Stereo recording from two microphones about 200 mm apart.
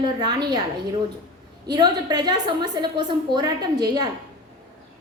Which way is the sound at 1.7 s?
20° right (ahead or behind).